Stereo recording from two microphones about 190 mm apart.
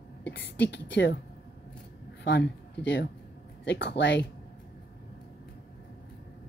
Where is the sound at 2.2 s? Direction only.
60° left (ahead or behind).